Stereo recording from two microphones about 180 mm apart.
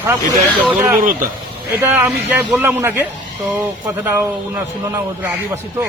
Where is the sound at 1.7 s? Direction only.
10° right (ahead or behind).